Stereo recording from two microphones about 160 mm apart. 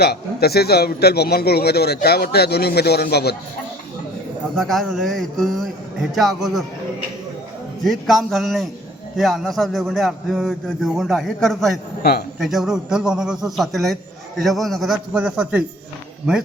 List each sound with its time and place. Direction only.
0.0 s a man's voice: 80° left
4.5 s a man's voice: centre (ahead or behind)
7.9 s a man's voice: centre (ahead or behind)
12.0 s a man's voice: 85° left
12.4 s a man's voice: centre (ahead or behind)